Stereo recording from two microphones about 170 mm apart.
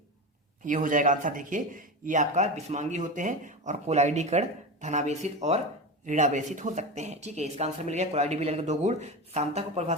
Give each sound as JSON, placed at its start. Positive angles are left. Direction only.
{"t": 0.6, "sound": "speech", "side_deg": -50}